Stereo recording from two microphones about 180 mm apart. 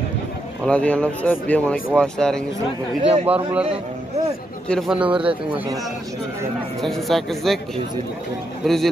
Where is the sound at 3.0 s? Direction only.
35° right (ahead or behind).